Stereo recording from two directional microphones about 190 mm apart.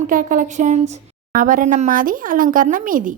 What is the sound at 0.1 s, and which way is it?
A woman's voice, 45° right (ahead or behind).